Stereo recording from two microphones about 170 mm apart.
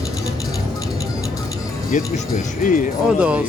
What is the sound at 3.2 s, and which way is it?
Speech, 5° right (ahead or behind).